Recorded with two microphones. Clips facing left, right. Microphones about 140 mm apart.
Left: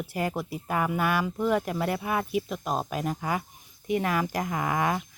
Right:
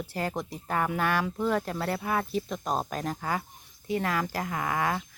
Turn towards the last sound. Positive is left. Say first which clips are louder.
# left 2 dB
turn(degrees=20)  # may be behind; listen again after turning